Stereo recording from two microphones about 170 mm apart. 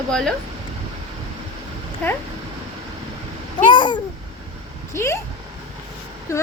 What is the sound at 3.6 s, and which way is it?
Speech, 25° left (ahead or behind).